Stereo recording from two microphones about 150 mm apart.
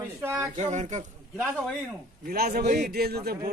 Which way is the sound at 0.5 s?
50° right (ahead or behind).